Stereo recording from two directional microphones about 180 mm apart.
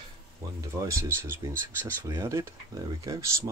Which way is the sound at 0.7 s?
15° right (ahead or behind).